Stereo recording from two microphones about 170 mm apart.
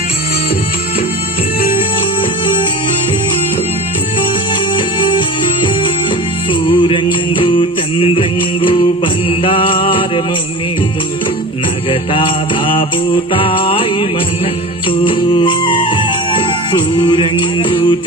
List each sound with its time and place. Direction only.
5.0 s music: 30° left (ahead or behind)
6.7 s music: 30° left (ahead or behind)
11.9 s mantra: 30° left (ahead or behind)
13.3 s music: 30° left (ahead or behind)
14.9 s music: 30° left (ahead or behind)
16.9 s music: 30° left (ahead or behind)